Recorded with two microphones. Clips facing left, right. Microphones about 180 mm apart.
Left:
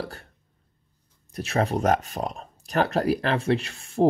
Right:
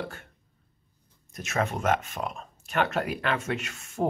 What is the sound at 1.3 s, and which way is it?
Speech, 35° left (ahead or behind).